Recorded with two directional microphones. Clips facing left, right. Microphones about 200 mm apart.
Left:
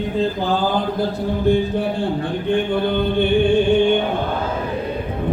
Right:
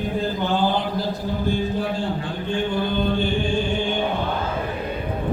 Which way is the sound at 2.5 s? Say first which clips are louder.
Left 4 dB; 60° left (ahead or behind).